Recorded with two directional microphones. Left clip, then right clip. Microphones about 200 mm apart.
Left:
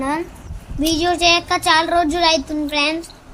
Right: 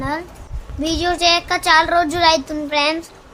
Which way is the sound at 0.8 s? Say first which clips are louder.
Left 1 dB; centre (ahead or behind).